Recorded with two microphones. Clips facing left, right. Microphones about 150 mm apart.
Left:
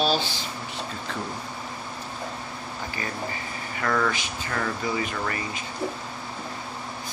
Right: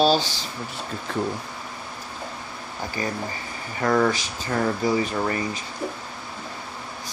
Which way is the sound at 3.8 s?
35° right (ahead or behind).